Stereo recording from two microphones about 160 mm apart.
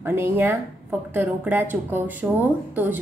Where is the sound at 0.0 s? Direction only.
15° right (ahead or behind).